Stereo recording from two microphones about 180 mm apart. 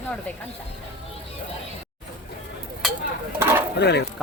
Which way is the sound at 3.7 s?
70° left (ahead or behind).